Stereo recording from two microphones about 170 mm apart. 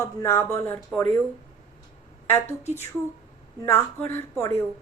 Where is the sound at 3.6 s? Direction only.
15° left (ahead or behind).